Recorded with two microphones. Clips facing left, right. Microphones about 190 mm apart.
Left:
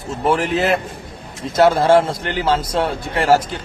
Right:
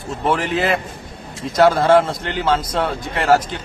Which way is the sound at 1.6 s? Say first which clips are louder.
Even; 25° left (ahead or behind).